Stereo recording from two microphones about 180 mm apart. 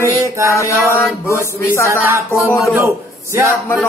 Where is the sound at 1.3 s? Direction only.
15° right (ahead or behind).